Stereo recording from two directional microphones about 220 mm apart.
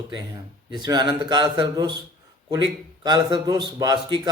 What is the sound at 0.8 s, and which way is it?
A man's voice, 20° right (ahead or behind).